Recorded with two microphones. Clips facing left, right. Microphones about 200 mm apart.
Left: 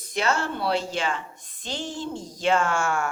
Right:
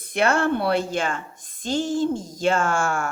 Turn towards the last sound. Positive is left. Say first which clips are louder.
# right 1 dB
turn(degrees=-45)  # may be behind; listen again after turning